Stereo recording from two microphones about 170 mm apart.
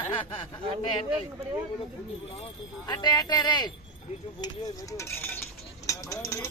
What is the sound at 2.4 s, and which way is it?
Speech, 25° left (ahead or behind).